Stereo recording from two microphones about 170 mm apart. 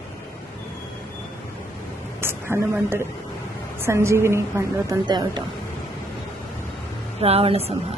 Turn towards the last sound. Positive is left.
turn(degrees=-35)  # may be behind; listen again after turning